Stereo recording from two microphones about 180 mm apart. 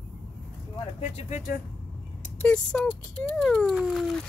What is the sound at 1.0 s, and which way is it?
Speech, 40° left (ahead or behind).